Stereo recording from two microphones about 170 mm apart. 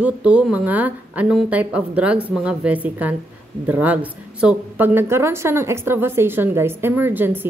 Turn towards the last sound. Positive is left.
turn(degrees=-10)  # may be behind; listen again after turning